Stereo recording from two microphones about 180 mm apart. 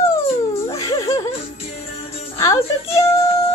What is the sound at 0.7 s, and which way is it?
Whimper, 25° left (ahead or behind).